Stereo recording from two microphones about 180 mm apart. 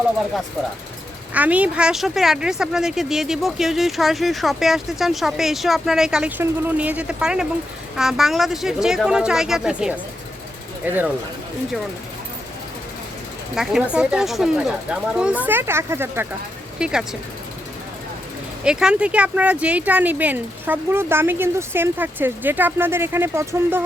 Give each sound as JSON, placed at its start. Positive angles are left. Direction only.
{"t": 1.3, "sound": "a woman's voice", "side_deg": -10}
{"t": 13.6, "sound": "a woman's voice", "side_deg": 0}
{"t": 16.8, "sound": "a woman's voice", "side_deg": -5}
{"t": 18.6, "sound": "speech", "side_deg": -5}